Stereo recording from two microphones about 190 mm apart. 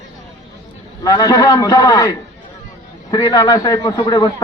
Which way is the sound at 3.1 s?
20° left (ahead or behind).